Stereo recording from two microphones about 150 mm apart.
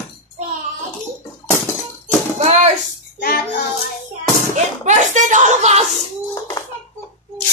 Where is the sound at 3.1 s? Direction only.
90° left.